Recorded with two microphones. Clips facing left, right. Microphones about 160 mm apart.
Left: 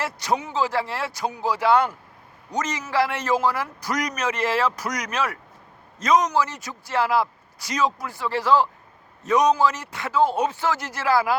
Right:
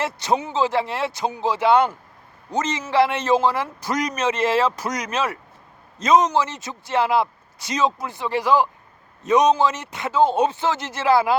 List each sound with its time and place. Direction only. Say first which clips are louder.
0.0 s speech: right 3 dB; 25° right (ahead or behind)